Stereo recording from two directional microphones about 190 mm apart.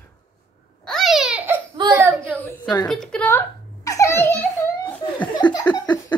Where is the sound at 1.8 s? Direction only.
25° right (ahead or behind).